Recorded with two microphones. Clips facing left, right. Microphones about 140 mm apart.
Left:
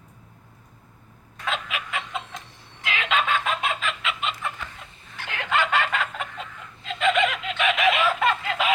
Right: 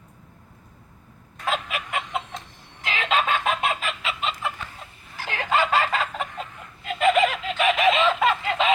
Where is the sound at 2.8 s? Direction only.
35° right (ahead or behind).